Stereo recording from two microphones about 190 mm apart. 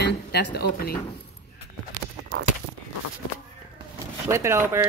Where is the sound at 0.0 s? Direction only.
60° left (ahead or behind).